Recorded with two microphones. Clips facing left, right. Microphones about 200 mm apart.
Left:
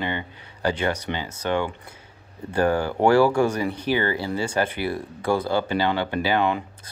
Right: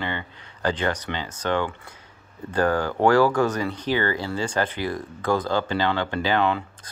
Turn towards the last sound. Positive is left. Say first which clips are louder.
# even
turn(degrees=15)  # may be behind; listen again after turning